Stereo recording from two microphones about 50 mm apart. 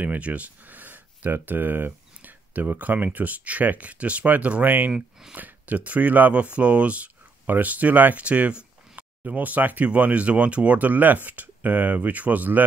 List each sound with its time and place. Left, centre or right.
0.0 s speech: right